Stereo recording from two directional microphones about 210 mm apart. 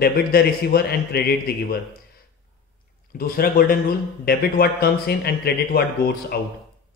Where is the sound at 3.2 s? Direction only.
45° left (ahead or behind).